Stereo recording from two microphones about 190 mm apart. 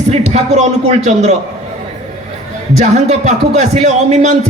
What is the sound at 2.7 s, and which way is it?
A man's voice, 35° right (ahead or behind).